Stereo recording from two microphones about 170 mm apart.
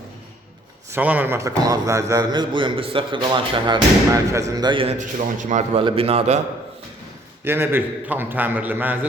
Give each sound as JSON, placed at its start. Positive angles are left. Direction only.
{"t": 0.9, "sound": "a man's voice", "side_deg": -10}
{"t": 4.9, "sound": "a man's voice", "side_deg": -50}
{"t": 5.8, "sound": "a man's voice", "side_deg": -35}
{"t": 7.4, "sound": "a man's voice", "side_deg": -15}